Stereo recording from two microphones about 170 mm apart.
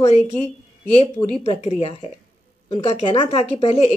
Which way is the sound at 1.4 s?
40° left (ahead or behind).